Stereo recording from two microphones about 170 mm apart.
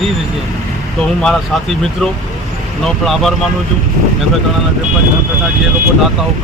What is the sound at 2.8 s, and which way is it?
Speech, centre (ahead or behind).